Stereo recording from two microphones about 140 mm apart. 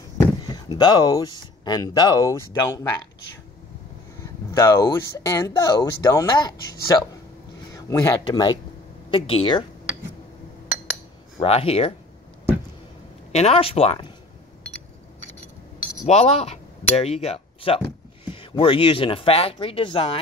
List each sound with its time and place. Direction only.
0.2 s speech: 30° left (ahead or behind)
4.2 s speech: 25° left (ahead or behind)
8.2 s speech: 30° left (ahead or behind)
11.4 s speech: 45° left (ahead or behind)
13.3 s speech: 50° left (ahead or behind)
16.1 s speech: 50° left (ahead or behind)